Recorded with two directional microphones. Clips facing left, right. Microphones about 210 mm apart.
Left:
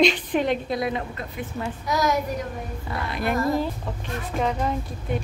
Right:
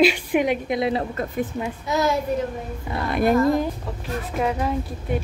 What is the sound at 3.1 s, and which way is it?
Speech, 50° right (ahead or behind).